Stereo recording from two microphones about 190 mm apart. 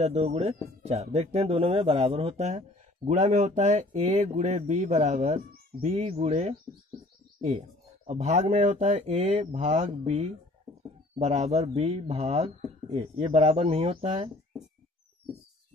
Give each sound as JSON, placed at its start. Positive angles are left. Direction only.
{"t": 0.0, "sound": "speech", "side_deg": -35}
{"t": 8.1, "sound": "speech", "side_deg": -35}